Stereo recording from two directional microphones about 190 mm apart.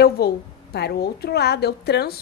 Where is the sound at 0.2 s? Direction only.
55° left (ahead or behind).